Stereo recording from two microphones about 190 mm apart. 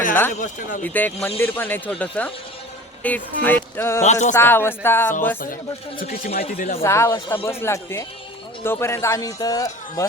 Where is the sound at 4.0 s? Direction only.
40° left (ahead or behind).